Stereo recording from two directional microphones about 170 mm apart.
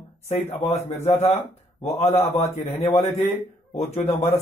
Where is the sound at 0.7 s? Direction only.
40° left (ahead or behind).